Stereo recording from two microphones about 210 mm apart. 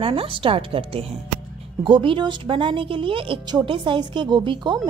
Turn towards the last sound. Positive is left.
turn(degrees=-20)  # may be behind; listen again after turning